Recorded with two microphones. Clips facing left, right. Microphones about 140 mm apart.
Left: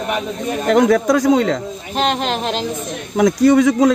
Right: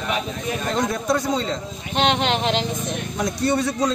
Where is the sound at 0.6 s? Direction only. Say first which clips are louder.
Left 10 dB; 80° left.